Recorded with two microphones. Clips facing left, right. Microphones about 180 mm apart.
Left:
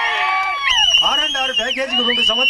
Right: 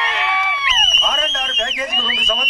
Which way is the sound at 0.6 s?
35° left (ahead or behind).